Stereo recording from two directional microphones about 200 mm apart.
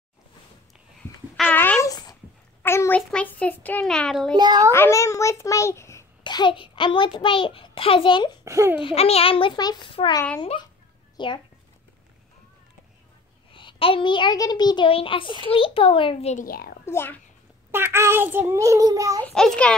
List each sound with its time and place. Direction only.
1.3 s a sound: 5° left (ahead or behind)
4.4 s a child's voice: 20° right (ahead or behind)
4.7 s a child's voice: 15° left (ahead or behind)
8.5 s a child's voice: 15° right (ahead or behind)
8.7 s a child's voice: 30° left (ahead or behind)
13.5 s a child's voice: 25° left (ahead or behind)
16.4 s a woman's voice: 50° left (ahead or behind)
16.8 s a child's voice: 10° left (ahead or behind)
17.6 s a child's voice: 10° right (ahead or behind)
19.2 s a child's voice: 5° left (ahead or behind)